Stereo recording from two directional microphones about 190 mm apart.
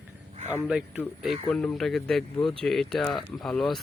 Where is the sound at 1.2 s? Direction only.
5° left (ahead or behind).